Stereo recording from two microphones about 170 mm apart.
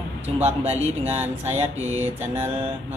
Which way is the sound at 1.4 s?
40° right (ahead or behind).